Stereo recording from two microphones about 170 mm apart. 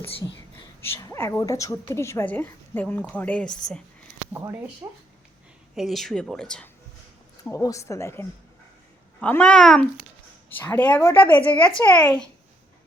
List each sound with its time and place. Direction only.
0.8 s a woman's voice: 15° left (ahead or behind)
4.8 s speech: 15° right (ahead or behind)
5.7 s speech: centre (ahead or behind)
7.5 s a woman's voice: 20° left (ahead or behind)